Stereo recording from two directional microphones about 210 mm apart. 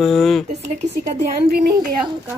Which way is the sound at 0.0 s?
Centre (ahead or behind).